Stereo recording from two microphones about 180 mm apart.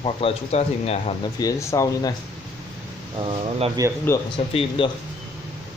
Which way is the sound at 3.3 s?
30° right (ahead or behind).